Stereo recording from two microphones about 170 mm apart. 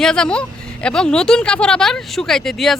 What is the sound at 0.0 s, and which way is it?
Speech, 5° left (ahead or behind).